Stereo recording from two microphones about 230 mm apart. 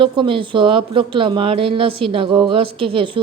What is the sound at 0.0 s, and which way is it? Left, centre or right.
Speech, right.